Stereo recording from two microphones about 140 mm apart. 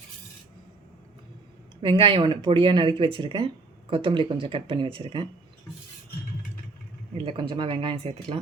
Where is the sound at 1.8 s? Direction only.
40° right (ahead or behind).